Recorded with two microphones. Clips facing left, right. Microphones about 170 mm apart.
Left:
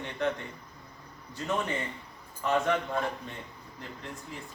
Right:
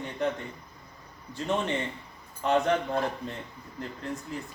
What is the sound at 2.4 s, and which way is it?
Speech, 30° right (ahead or behind).